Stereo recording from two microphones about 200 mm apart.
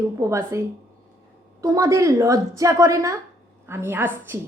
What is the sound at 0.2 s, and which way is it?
Speech, 15° right (ahead or behind).